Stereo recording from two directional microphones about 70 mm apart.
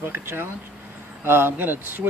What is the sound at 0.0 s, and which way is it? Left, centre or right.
Speech, right.